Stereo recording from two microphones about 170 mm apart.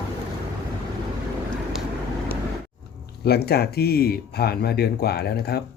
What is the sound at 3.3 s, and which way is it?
Speech, 70° left (ahead or behind).